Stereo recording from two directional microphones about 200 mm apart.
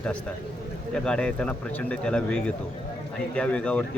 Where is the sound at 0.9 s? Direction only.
5° left (ahead or behind).